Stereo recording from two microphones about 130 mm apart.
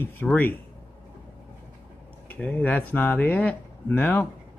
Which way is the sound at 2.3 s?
10° left (ahead or behind).